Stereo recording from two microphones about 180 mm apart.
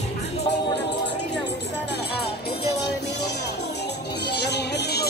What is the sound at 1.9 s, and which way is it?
Music, 65° left (ahead or behind).